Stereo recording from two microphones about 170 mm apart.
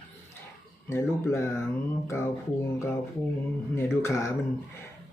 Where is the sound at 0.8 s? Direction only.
15° left (ahead or behind).